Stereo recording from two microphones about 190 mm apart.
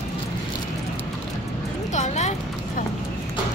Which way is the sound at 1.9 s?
40° left (ahead or behind).